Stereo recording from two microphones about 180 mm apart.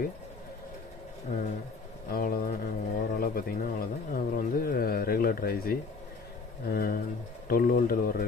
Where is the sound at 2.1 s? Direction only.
50° left (ahead or behind).